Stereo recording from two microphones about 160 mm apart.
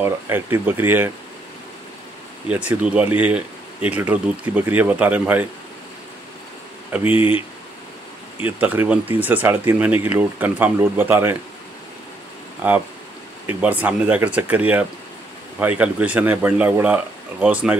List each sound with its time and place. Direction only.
0.0 s speech: 15° right (ahead or behind)
2.4 s speech: 5° right (ahead or behind)
7.2 s speech: 35° left (ahead or behind)
8.4 s speech: 10° right (ahead or behind)
12.6 s speech: 10° right (ahead or behind)